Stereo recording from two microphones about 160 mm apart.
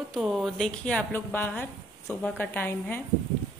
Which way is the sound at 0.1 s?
Centre (ahead or behind).